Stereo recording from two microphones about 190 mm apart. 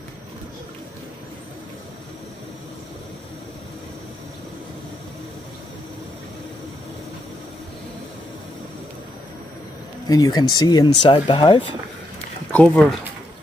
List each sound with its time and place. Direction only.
10.0 s speech: 20° left (ahead or behind)
12.5 s speech: 5° left (ahead or behind)